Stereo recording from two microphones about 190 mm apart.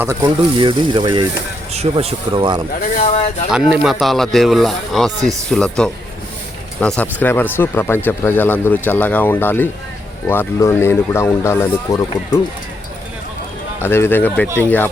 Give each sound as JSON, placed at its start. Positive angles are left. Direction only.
{"t": 0.0, "sound": "speech", "side_deg": -15}
{"t": 3.0, "sound": "speech", "side_deg": 35}
{"t": 3.5, "sound": "speech", "side_deg": -5}
{"t": 13.8, "sound": "speech", "side_deg": 10}